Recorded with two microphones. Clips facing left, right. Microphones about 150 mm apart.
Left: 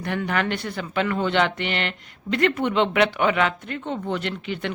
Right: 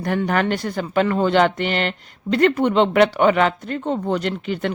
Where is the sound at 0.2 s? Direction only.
40° right (ahead or behind).